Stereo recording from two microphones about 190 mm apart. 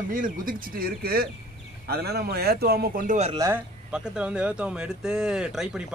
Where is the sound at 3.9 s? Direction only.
5° right (ahead or behind).